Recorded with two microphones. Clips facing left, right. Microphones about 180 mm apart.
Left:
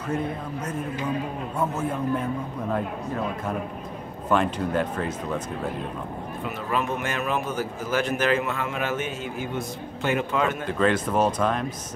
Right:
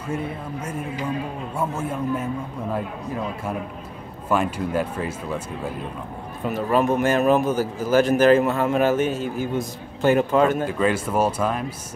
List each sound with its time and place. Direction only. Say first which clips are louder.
0.1 s speech: even; 10° right (ahead or behind)
4.3 s speech: right 1 dB; 5° right (ahead or behind)
6.4 s a man's voice: right 8 dB; 40° right (ahead or behind)
10.6 s speech: right 1 dB; 5° right (ahead or behind)